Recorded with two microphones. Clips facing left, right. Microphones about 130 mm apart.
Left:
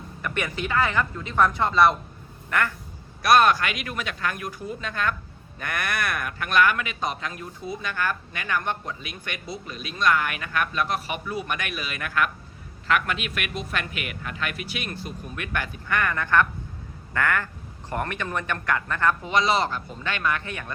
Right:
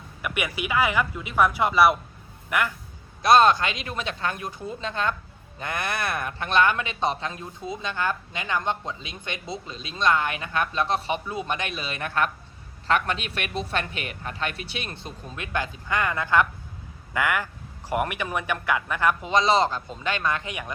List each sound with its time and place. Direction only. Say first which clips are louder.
0.2 s a man's voice: even; 10° right (ahead or behind)
3.2 s a man's voice: right 1 dB; 25° right (ahead or behind)